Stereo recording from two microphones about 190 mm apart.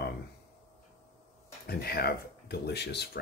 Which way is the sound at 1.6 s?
55° left (ahead or behind).